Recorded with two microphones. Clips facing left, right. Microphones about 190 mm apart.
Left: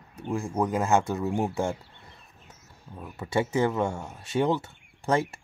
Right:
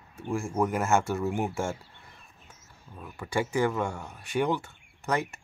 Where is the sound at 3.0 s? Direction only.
25° left (ahead or behind).